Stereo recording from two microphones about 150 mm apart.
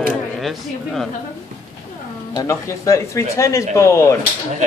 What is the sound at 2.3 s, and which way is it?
Speech, 20° left (ahead or behind).